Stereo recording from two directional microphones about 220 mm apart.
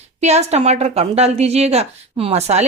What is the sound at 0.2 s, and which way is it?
A woman's voice, 30° right (ahead or behind).